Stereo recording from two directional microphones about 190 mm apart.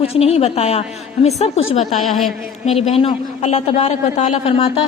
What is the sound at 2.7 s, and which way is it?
A man's voice, 35° left (ahead or behind).